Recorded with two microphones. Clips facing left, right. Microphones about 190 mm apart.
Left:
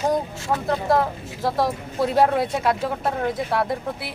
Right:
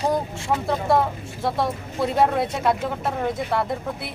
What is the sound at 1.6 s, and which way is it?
Speech, centre (ahead or behind).